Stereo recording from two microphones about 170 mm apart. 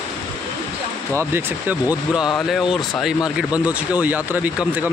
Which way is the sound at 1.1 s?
10° right (ahead or behind).